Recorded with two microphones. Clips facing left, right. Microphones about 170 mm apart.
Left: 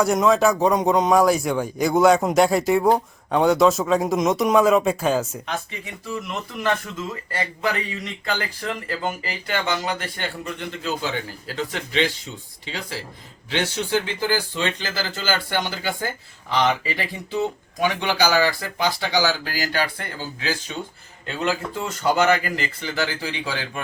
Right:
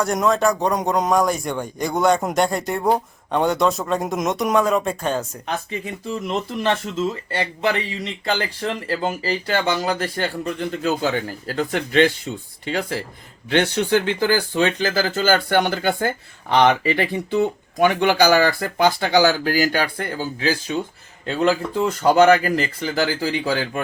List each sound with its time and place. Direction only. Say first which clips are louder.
0.0 s a man's voice: left 1 dB; centre (ahead or behind)
6.1 s speech: right 4 dB; 30° right (ahead or behind); by 20.5 s 45° right (ahead or behind)
22.0 s speech: right 5 dB; 35° right (ahead or behind)